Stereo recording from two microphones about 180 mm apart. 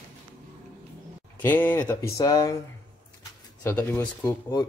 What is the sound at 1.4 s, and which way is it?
Speech, 10° left (ahead or behind).